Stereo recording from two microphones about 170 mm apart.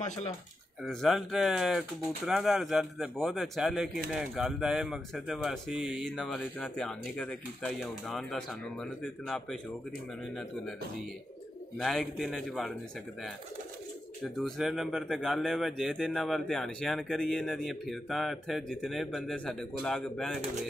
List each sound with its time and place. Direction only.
0.0 s speech: 45° left (ahead or behind)
0.8 s speech: centre (ahead or behind)
11.8 s speech: centre (ahead or behind)
14.2 s speech: centre (ahead or behind)